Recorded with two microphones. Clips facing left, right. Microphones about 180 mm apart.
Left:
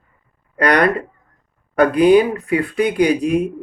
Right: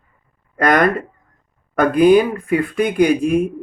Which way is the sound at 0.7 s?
45° right (ahead or behind).